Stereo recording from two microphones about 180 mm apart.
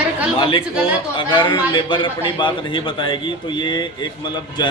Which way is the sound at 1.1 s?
25° left (ahead or behind).